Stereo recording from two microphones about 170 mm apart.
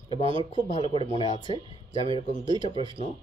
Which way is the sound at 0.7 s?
40° left (ahead or behind).